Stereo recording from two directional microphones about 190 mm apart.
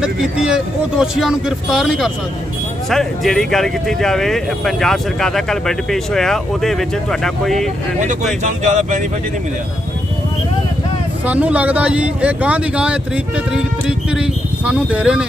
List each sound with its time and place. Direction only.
0.0 s speech: 5° right (ahead or behind)
8.0 s speech: 40° right (ahead or behind)
11.2 s speech: 5° right (ahead or behind)